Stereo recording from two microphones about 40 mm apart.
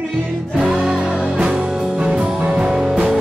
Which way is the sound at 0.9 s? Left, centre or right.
Right.